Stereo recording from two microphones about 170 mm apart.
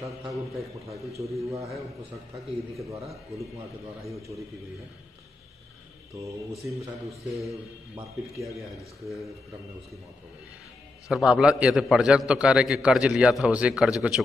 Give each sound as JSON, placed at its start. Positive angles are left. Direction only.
{"t": 0.6, "sound": "a man's voice", "side_deg": -20}
{"t": 6.5, "sound": "a man's voice", "side_deg": 0}
{"t": 11.1, "sound": "a man's voice", "side_deg": -5}